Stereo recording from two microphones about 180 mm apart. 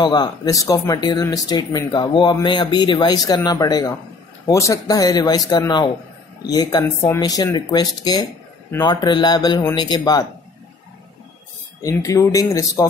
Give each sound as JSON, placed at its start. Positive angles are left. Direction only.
{"t": 0.0, "sound": "speech", "side_deg": 25}
{"t": 11.8, "sound": "speech", "side_deg": 15}